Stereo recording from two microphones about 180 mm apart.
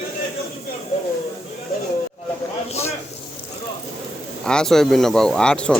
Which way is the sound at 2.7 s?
35° left (ahead or behind).